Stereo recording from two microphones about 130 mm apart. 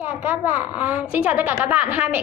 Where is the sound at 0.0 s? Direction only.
10° right (ahead or behind).